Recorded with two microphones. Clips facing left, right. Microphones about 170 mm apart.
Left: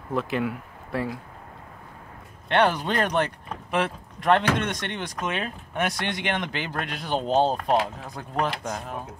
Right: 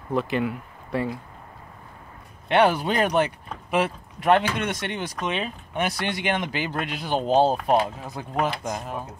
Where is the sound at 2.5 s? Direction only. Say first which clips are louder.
Right 2 dB; 10° right (ahead or behind).